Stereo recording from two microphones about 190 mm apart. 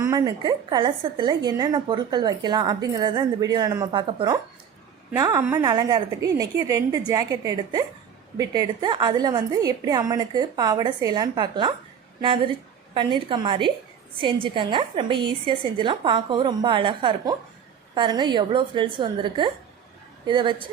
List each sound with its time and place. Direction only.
0.0 s a woman's voice: 20° right (ahead or behind)